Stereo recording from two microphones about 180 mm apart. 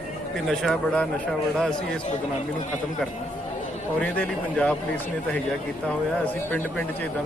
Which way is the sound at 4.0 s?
5° left (ahead or behind).